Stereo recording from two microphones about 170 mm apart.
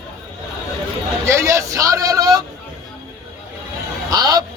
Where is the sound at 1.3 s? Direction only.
15° right (ahead or behind).